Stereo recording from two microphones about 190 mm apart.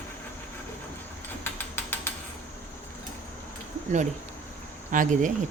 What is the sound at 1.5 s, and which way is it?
Ratchet, 10° left (ahead or behind).